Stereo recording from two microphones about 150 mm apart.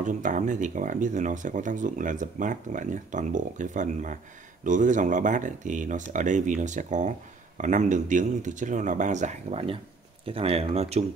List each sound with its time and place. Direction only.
0.0 s speech: 55° right (ahead or behind)